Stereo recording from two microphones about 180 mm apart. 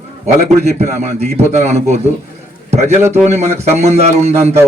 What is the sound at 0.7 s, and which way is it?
A man's voice, 40° right (ahead or behind).